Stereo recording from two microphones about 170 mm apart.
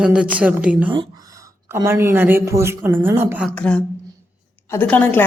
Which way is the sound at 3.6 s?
5° left (ahead or behind).